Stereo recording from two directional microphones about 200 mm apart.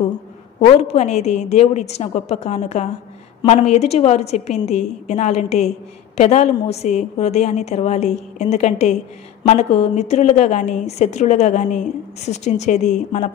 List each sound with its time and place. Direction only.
0.6 s a woman's voice: 35° left (ahead or behind)